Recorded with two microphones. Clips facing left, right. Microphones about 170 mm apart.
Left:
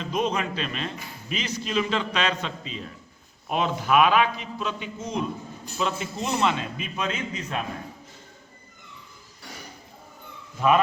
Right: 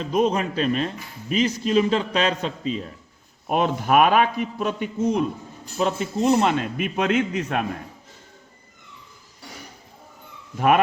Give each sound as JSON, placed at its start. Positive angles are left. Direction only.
{"t": 0.0, "sound": "a man's voice", "side_deg": -45}